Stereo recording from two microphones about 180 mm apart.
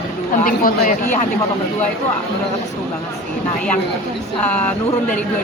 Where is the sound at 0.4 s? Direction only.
50° left (ahead or behind).